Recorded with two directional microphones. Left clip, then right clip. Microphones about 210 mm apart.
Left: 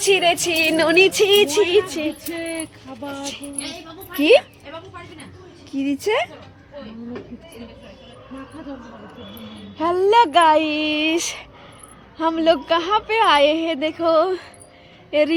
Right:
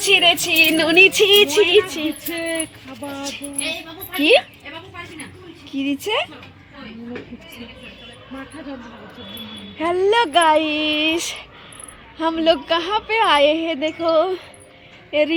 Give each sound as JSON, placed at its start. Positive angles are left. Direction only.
{"t": 0.0, "sound": "speech", "side_deg": 10}
{"t": 3.0, "sound": "a woman's voice", "side_deg": 0}
{"t": 4.2, "sound": "speech", "side_deg": 10}
{"t": 5.7, "sound": "speech", "side_deg": 15}
{"t": 9.7, "sound": "a woman's voice", "side_deg": 0}